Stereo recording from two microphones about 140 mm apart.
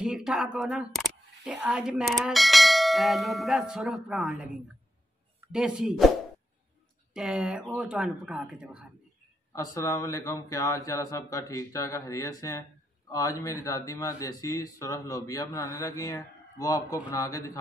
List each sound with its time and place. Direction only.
0.0 s a sound: 5° right (ahead or behind)
1.6 s bell: 5° right (ahead or behind)
5.5 s bell: 5° right (ahead or behind)
7.2 s bell: 5° right (ahead or behind)
9.5 s speech: 20° left (ahead or behind)